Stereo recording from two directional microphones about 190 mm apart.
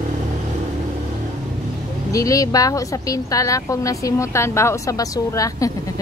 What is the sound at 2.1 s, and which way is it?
Speech, 15° left (ahead or behind).